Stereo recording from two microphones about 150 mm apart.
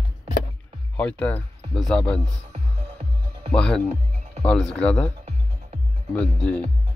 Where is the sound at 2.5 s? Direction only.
45° right (ahead or behind).